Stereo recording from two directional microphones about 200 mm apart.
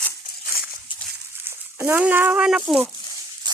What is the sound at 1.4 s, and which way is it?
A child's voice, 10° right (ahead or behind).